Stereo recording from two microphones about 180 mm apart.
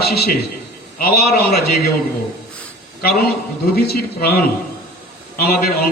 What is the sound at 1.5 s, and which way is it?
Speech, 60° left (ahead or behind).